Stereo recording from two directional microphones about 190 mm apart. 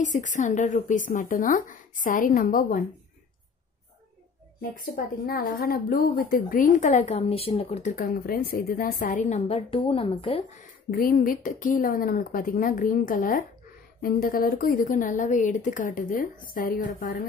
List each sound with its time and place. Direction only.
0.0 s a woman's voice: 40° left (ahead or behind)
4.6 s a woman's voice: 50° left (ahead or behind); by 10.6 s 30° left (ahead or behind)
10.9 s a woman's voice: 50° left (ahead or behind)